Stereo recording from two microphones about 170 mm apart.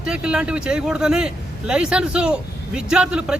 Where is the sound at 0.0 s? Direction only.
5° right (ahead or behind).